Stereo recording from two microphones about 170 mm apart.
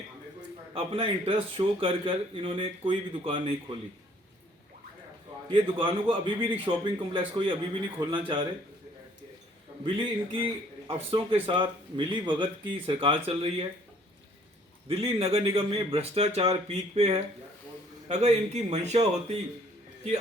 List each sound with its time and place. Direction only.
0.7 s a man's voice: 35° right (ahead or behind)
5.5 s a man's voice: 30° right (ahead or behind)
9.8 s a man's voice: 30° right (ahead or behind)
14.8 s a man's voice: 35° right (ahead or behind)